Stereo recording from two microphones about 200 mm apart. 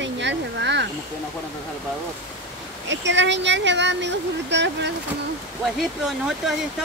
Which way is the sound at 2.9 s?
65° right (ahead or behind).